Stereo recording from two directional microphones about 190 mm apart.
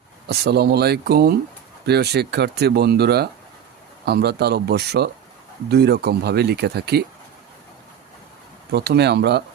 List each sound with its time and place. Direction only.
0.3 s speech: 60° right (ahead or behind)
8.7 s speech: 60° right (ahead or behind)